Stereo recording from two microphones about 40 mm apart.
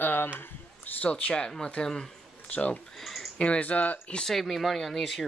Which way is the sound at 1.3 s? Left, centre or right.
Centre.